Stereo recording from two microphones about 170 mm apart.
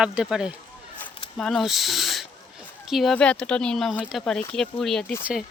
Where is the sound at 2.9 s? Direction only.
Centre (ahead or behind).